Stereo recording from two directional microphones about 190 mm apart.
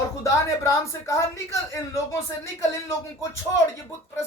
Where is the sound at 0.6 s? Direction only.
15° left (ahead or behind).